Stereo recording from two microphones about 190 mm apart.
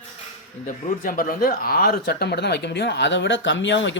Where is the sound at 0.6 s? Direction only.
45° left (ahead or behind).